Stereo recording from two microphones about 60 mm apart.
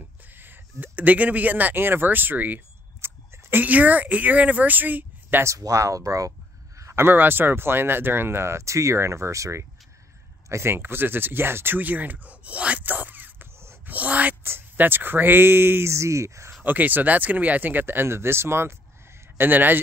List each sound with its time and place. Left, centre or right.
0.3 s a sound: right
3.6 s speech: right
5.6 s speech: right
7.0 s speech: right
10.5 s speech: right
13.8 s dog: right
14.4 s speech: right
16.6 s speech: right
19.3 s speech: right